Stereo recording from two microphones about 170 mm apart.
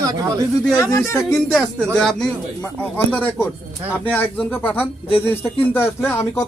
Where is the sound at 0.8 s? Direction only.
20° left (ahead or behind).